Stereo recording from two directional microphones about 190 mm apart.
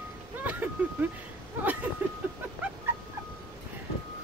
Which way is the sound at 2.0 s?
10° right (ahead or behind).